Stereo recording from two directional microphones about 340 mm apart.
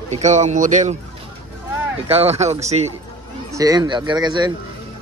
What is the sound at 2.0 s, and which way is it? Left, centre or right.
Speech, centre.